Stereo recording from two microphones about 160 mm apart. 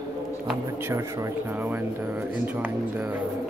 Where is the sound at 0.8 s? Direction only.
15° right (ahead or behind).